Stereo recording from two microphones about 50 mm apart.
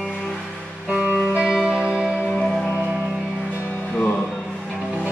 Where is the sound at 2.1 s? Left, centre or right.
Left.